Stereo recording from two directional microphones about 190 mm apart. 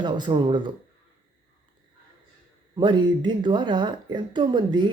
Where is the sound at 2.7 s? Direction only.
25° right (ahead or behind).